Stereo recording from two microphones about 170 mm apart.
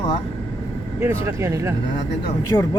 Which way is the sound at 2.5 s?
15° left (ahead or behind).